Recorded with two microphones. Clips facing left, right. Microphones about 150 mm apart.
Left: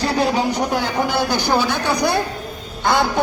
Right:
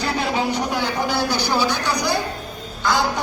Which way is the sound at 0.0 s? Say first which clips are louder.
Left 4 dB; 40° left (ahead or behind).